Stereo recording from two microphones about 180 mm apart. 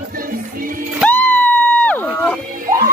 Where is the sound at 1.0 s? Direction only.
10° left (ahead or behind).